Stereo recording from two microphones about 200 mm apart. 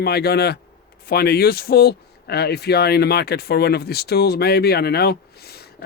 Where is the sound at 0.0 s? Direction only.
55° left (ahead or behind).